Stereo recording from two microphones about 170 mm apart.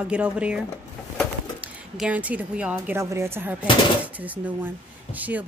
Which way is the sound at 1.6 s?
10° right (ahead or behind).